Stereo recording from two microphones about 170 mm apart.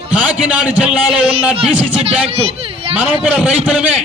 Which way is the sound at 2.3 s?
35° right (ahead or behind).